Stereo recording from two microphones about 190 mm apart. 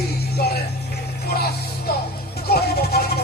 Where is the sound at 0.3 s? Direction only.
55° left (ahead or behind).